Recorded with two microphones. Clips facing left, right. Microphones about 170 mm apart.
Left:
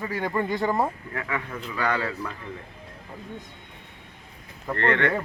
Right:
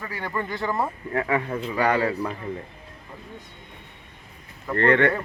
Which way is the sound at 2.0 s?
35° right (ahead or behind).